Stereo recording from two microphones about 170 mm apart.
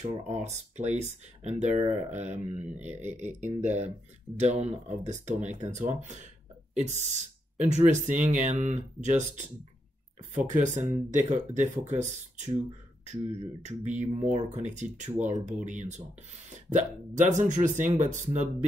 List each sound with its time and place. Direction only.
0.0 s speech: 40° right (ahead or behind)
10.3 s speech: 45° right (ahead or behind)
13.0 s speech: 40° right (ahead or behind)